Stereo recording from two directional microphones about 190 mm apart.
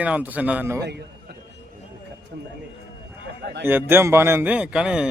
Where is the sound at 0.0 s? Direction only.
10° right (ahead or behind).